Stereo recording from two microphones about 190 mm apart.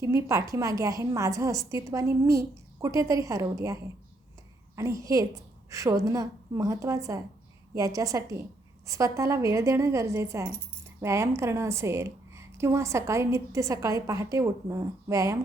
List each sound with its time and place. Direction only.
0.0 s a woman's voice: 15° right (ahead or behind)
4.8 s a woman's voice: 15° right (ahead or behind)